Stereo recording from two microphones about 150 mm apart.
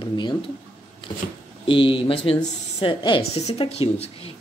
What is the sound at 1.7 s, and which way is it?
Speech, 35° left (ahead or behind).